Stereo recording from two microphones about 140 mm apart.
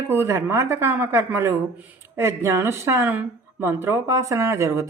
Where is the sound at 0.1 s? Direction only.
20° right (ahead or behind).